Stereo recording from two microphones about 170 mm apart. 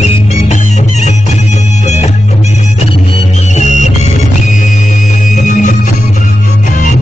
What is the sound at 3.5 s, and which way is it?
Music, 45° left (ahead or behind).